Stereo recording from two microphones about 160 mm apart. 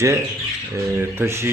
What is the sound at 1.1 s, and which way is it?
Speech, 15° right (ahead or behind).